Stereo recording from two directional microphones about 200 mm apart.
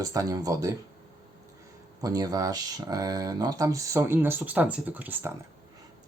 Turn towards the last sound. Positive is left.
turn(degrees=-10)  # may be behind; listen again after turning